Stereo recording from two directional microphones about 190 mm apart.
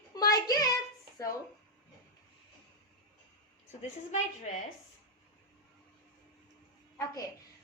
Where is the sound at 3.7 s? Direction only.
35° left (ahead or behind).